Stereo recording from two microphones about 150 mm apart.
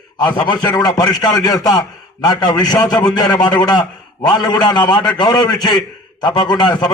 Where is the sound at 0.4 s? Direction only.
25° left (ahead or behind).